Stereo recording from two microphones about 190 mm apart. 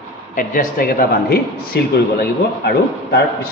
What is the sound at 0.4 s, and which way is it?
A man's voice, 45° left (ahead or behind).